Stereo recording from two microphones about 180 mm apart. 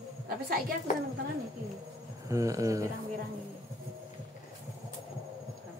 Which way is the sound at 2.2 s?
20° right (ahead or behind).